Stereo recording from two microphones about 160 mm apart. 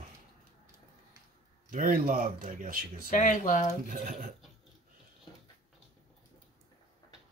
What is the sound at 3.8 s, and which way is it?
Speech, 55° right (ahead or behind).